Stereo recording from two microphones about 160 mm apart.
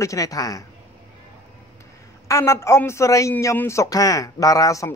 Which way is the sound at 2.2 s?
15° left (ahead or behind).